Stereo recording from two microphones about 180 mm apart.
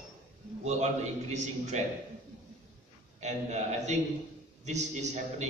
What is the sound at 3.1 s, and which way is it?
A man's voice, 40° right (ahead or behind).